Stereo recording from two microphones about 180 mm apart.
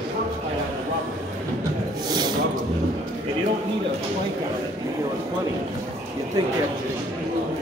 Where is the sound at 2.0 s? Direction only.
25° right (ahead or behind).